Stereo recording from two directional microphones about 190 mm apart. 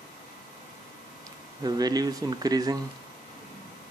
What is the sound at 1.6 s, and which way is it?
Speech, 20° right (ahead or behind).